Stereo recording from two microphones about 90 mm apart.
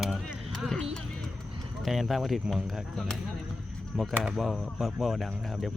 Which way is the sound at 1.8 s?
Centre (ahead or behind).